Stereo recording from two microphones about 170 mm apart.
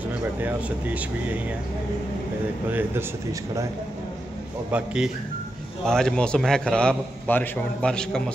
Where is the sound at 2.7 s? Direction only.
10° right (ahead or behind).